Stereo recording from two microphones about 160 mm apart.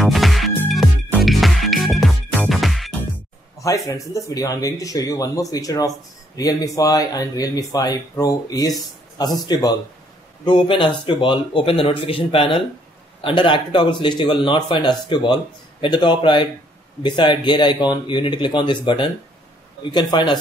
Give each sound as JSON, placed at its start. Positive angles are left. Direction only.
{"t": 0.0, "sound": "music", "side_deg": 0}
{"t": 3.5, "sound": "speech", "side_deg": 20}